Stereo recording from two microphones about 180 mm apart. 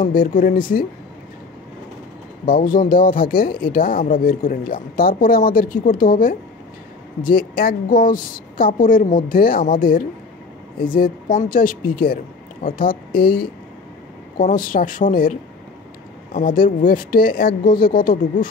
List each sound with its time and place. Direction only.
0.0 s a woman's voice: 50° left (ahead or behind)
2.4 s a woman's voice: 50° left (ahead or behind)
16.3 s a woman's voice: 50° left (ahead or behind)